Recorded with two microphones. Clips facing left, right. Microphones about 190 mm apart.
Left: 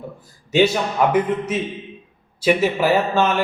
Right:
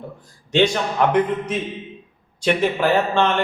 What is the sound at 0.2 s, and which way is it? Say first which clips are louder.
A man's voice: left 1 dB; 5° left (ahead or behind).